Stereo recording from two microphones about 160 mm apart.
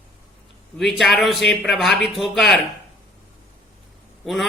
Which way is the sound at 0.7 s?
Centre (ahead or behind).